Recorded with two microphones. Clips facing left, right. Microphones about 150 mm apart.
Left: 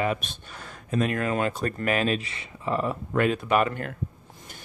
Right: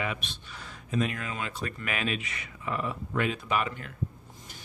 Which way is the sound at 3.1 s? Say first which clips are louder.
Left 7 dB; 50° left (ahead or behind).